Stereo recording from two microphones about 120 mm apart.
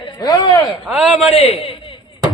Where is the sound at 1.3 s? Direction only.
55° left (ahead or behind).